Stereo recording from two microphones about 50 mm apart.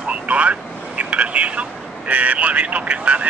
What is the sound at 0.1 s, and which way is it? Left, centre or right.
Speech, right.